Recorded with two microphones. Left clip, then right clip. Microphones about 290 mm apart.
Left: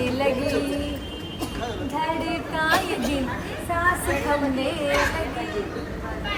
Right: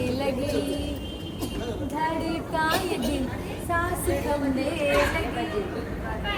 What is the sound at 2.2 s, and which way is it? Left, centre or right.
Speech, centre.